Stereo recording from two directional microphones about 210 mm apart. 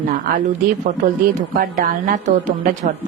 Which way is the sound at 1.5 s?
40° right (ahead or behind).